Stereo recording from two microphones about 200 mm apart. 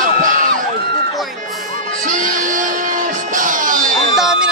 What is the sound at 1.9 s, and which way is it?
Music, 40° right (ahead or behind).